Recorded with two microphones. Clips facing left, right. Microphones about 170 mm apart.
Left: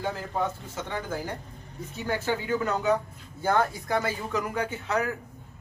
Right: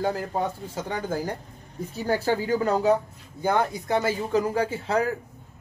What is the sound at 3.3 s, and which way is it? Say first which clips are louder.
Speech: right 1 dB; 15° right (ahead or behind).